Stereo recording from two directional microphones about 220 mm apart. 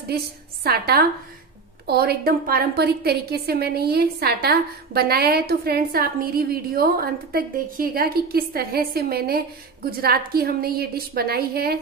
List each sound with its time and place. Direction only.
0.7 s a woman's voice: 45° right (ahead or behind)